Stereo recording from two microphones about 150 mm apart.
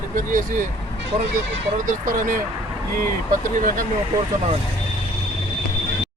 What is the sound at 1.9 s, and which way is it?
Speech, 60° right (ahead or behind).